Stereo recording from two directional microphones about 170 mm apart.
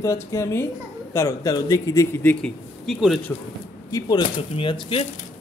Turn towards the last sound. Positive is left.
turn(degrees=30)  # may be behind; listen again after turning